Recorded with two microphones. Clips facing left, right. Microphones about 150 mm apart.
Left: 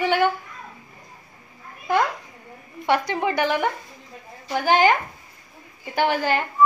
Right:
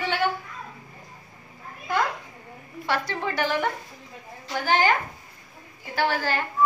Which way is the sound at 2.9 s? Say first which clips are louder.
Left 6 dB; 15° left (ahead or behind).